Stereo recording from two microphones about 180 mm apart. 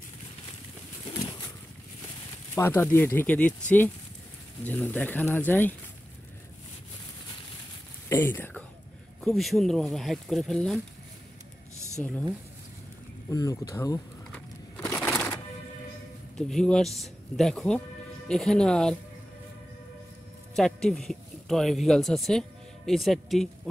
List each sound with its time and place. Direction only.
2.5 s speech: 10° left (ahead or behind)
8.1 s speech: 15° left (ahead or behind)
9.2 s speech: centre (ahead or behind)
12.0 s speech: 5° left (ahead or behind)
13.3 s speech: 20° left (ahead or behind)
14.3 s a sound: 10° left (ahead or behind)
16.3 s speech: 5° left (ahead or behind)
20.5 s speech: 5° left (ahead or behind)